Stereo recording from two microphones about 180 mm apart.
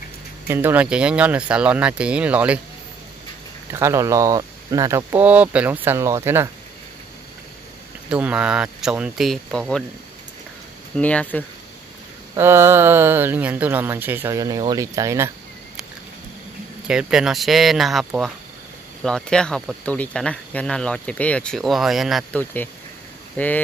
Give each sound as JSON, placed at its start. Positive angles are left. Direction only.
{"t": 0.5, "sound": "speech", "side_deg": -10}
{"t": 3.7, "sound": "speech", "side_deg": -15}
{"t": 8.1, "sound": "speech", "side_deg": -5}
{"t": 11.0, "sound": "speech", "side_deg": 10}
{"t": 12.4, "sound": "speech", "side_deg": -15}
{"t": 16.8, "sound": "speech", "side_deg": -5}
{"t": 22.4, "sound": "speech", "side_deg": 10}